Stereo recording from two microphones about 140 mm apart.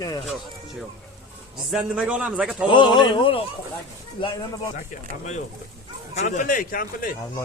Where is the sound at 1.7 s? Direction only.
5° right (ahead or behind).